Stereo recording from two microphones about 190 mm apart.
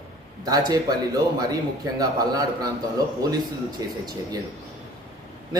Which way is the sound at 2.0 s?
20° right (ahead or behind).